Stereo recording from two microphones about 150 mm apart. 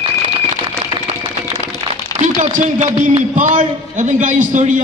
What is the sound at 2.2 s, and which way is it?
A man's voice, 55° right (ahead or behind).